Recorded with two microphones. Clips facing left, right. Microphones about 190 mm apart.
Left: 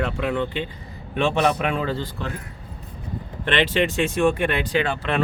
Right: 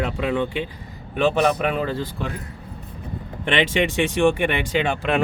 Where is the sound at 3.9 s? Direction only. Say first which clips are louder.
Right 1 dB; 15° right (ahead or behind).